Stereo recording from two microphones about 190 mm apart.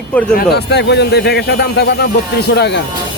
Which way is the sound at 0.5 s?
60° left (ahead or behind).